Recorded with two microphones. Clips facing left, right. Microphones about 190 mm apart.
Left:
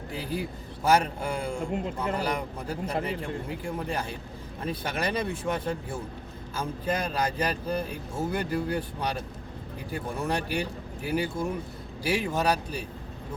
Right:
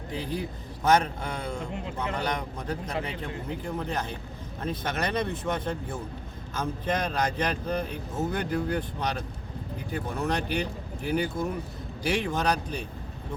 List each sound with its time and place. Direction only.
0.1 s speech: 5° left (ahead or behind)